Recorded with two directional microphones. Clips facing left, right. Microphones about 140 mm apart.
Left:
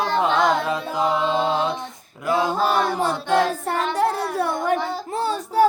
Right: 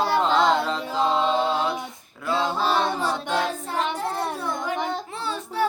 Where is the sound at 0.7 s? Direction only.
15° left (ahead or behind).